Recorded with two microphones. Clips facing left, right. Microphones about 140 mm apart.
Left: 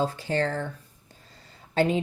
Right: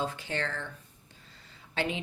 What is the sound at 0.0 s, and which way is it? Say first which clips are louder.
Speech: left 7 dB; 35° left (ahead or behind).